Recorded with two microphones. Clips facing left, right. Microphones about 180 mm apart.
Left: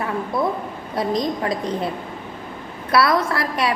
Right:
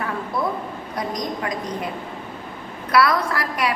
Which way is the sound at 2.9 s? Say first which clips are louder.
Left 1 dB; 25° left (ahead or behind).